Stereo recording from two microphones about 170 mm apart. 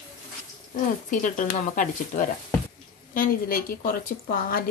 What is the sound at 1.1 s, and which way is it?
A woman's voice, 50° left (ahead or behind).